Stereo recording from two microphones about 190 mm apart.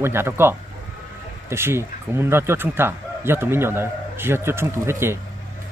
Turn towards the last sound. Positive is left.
turn(degrees=-15)  # may be behind; listen again after turning